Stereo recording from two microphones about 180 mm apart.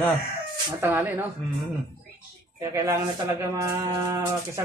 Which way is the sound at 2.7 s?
15° right (ahead or behind).